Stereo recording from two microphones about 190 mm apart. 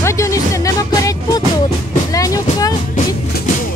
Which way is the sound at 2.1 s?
20° left (ahead or behind).